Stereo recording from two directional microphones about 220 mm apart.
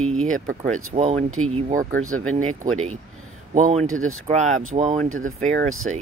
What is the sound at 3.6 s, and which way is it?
Speech, 35° right (ahead or behind).